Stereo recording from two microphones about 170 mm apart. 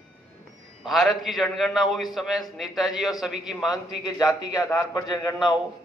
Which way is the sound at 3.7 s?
20° left (ahead or behind).